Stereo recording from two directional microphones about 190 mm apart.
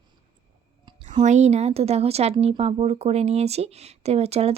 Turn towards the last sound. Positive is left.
turn(degrees=-35)  # may be behind; listen again after turning